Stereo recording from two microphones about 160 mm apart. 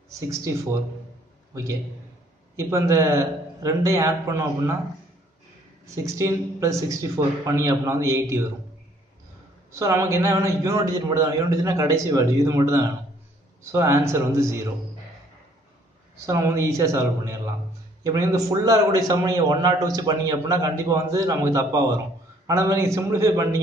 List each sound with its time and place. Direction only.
0.3 s a man's voice: 20° right (ahead or behind)
2.5 s a man's voice: 20° right (ahead or behind)
6.0 s a man's voice: 20° right (ahead or behind)
9.7 s a man's voice: 20° right (ahead or behind)
16.3 s a man's voice: 20° right (ahead or behind)